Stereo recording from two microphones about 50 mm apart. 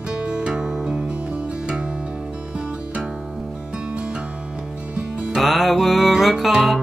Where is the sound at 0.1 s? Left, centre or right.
Centre.